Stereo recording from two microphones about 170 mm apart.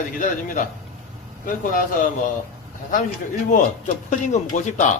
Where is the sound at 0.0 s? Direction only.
50° left (ahead or behind).